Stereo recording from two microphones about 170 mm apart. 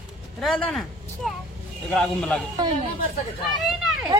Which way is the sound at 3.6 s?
Centre (ahead or behind).